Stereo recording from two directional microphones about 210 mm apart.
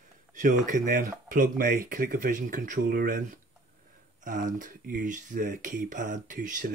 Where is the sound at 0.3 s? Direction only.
35° right (ahead or behind).